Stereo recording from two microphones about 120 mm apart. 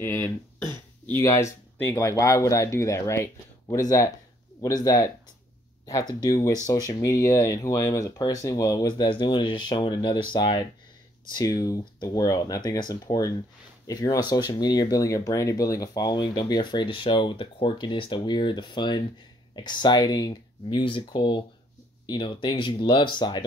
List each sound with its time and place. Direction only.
0.0 s speech: 20° left (ahead or behind); by 23.4 s 40° left (ahead or behind)